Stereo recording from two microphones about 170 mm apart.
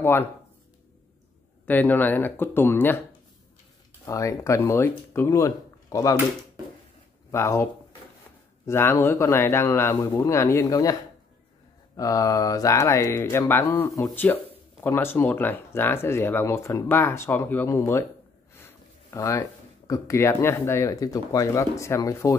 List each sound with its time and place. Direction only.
0.0 s speech: 15° left (ahead or behind)
1.7 s speech: 10° left (ahead or behind)
4.0 s speech: 15° left (ahead or behind)
7.2 s a man's voice: 15° left (ahead or behind)
8.6 s speech: 15° left (ahead or behind)
12.0 s speech: 20° left (ahead or behind)